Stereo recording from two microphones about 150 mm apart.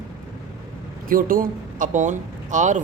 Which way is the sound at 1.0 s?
70° right (ahead or behind).